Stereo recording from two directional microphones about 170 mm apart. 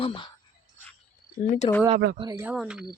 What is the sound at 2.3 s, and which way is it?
Speech, 15° right (ahead or behind).